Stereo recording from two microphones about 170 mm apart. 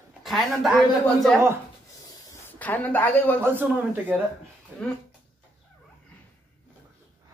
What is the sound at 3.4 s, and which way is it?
Speech, 10° right (ahead or behind).